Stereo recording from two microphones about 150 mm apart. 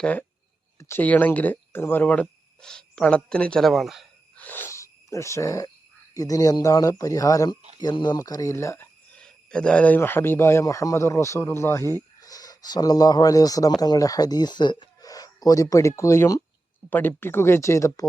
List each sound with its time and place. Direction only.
0.0 s speech: 10° left (ahead or behind)
4.4 s cricket: 10° left (ahead or behind)
6.1 s speech: 25° left (ahead or behind)
9.1 s speech: 5° left (ahead or behind); by 18.1 s 20° left (ahead or behind)